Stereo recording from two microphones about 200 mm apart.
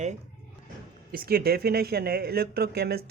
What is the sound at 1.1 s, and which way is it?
Speech, 50° right (ahead or behind).